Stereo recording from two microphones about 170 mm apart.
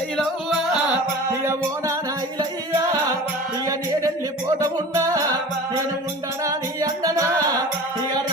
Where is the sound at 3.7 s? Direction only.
20° right (ahead or behind).